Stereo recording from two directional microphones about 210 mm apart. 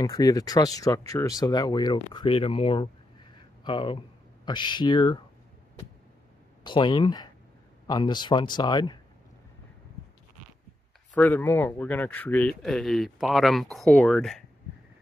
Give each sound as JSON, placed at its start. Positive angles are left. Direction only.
{"t": 0.0, "sound": "speech", "side_deg": 15}
{"t": 6.6, "sound": "speech", "side_deg": 20}
{"t": 11.1, "sound": "speech", "side_deg": 10}